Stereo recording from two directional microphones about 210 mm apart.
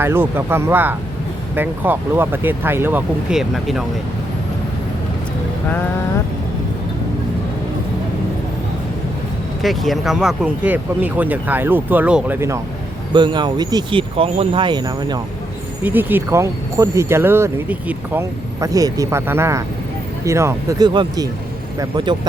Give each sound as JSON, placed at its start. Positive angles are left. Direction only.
{"t": 0.0, "sound": "speech", "side_deg": -10}
{"t": 9.6, "sound": "speech", "side_deg": 0}
{"t": 13.1, "sound": "speech", "side_deg": -20}
{"t": 15.8, "sound": "speech", "side_deg": -10}